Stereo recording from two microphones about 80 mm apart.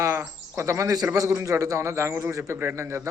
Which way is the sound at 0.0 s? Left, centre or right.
Right.